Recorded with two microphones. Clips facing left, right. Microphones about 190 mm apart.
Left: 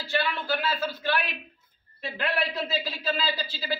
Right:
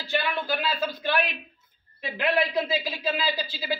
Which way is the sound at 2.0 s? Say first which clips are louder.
Right 4 dB; 15° right (ahead or behind).